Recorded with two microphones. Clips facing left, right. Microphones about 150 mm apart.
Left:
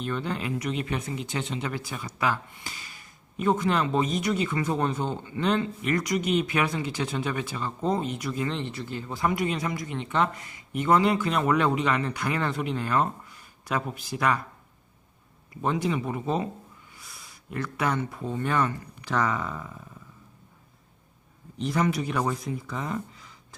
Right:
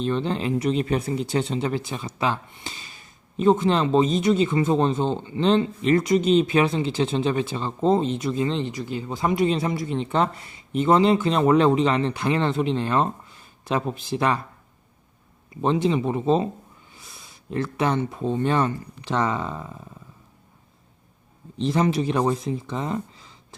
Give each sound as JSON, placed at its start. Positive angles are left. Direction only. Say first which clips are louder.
{"t": 0.0, "sound": "speech", "louder": "right 6 dB", "side_deg": -25}
{"t": 15.6, "sound": "speech", "louder": "right 6 dB", "side_deg": -25}
{"t": 21.6, "sound": "speech", "louder": "right 4 dB", "side_deg": -25}